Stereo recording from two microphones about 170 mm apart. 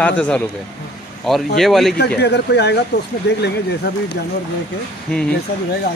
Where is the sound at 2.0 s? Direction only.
75° left (ahead or behind).